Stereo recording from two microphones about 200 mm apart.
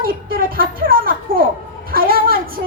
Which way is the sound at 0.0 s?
45° right (ahead or behind).